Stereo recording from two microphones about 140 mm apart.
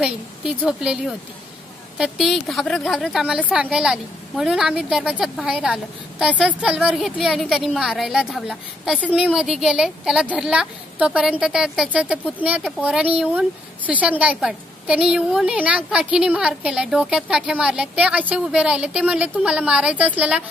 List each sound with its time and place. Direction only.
0.7 s a woman's voice: 5° right (ahead or behind)